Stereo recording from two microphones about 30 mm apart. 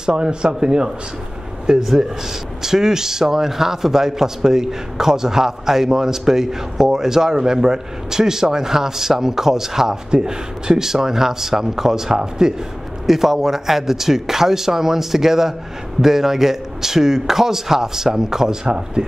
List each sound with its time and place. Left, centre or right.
0.0 s speech: right
1.8 s speech: centre
13.0 s speech: centre